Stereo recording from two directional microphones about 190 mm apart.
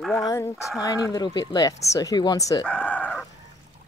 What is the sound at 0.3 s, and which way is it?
Speech, 15° left (ahead or behind).